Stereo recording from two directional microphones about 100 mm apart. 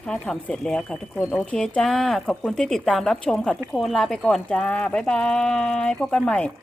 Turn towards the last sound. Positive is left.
turn(degrees=10)  # may be behind; listen again after turning